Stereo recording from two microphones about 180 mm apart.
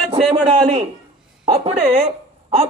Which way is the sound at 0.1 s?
35° right (ahead or behind).